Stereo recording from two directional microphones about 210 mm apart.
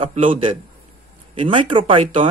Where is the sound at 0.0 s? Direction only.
25° right (ahead or behind).